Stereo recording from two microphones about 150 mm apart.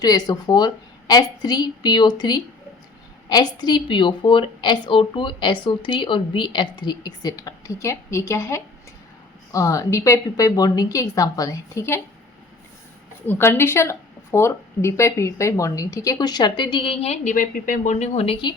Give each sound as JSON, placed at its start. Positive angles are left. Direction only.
{"t": 0.0, "sound": "a woman's voice", "side_deg": 25}
{"t": 13.2, "sound": "speech", "side_deg": 15}